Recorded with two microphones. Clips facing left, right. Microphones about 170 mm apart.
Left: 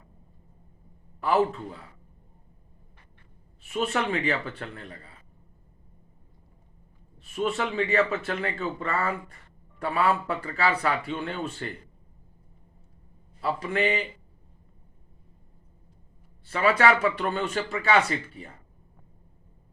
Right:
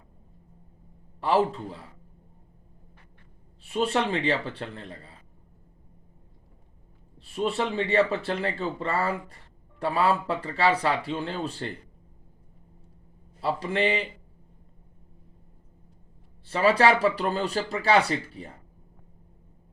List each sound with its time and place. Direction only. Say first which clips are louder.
1.2 s a man's voice: even; 30° right (ahead or behind)
3.6 s speech: right 2 dB; 30° right (ahead or behind)
7.2 s speech: right 1 dB; 30° right (ahead or behind)
13.4 s a man's voice: right 1 dB; 30° right (ahead or behind)
16.5 s speech: right 1 dB; 30° right (ahead or behind)